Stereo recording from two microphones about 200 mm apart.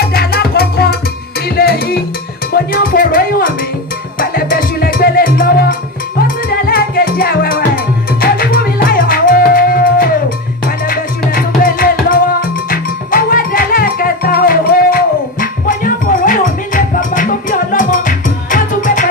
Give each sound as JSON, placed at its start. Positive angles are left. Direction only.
{"t": 0.0, "sound": "music", "side_deg": 50}
{"t": 1.5, "sound": "salsa music", "side_deg": 50}
{"t": 2.5, "sound": "music", "side_deg": 50}
{"t": 11.3, "sound": "music", "side_deg": 45}